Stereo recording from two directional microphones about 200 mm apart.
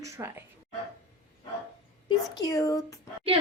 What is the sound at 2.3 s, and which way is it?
Speech, 15° left (ahead or behind).